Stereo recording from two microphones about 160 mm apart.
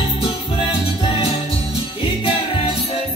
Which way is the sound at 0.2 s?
35° left (ahead or behind).